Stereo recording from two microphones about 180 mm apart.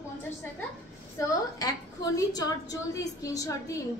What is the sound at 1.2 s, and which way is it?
A woman's voice, 20° left (ahead or behind).